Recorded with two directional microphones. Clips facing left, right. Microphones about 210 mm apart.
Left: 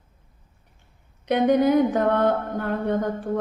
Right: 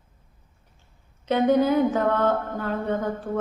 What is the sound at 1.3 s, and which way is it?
A woman's voice, 15° left (ahead or behind).